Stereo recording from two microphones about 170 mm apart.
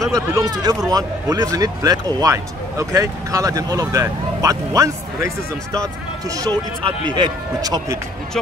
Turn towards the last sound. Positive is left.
turn(degrees=-20)  # may be behind; listen again after turning